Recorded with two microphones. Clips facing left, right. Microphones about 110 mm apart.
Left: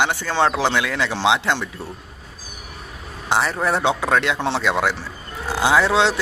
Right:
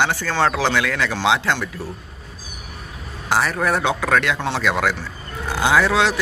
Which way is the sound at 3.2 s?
25° left (ahead or behind).